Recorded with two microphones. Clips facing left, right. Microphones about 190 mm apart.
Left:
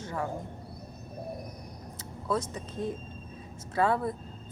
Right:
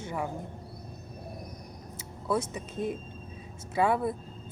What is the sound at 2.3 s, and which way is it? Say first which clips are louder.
Speech: right 1 dB; 10° right (ahead or behind).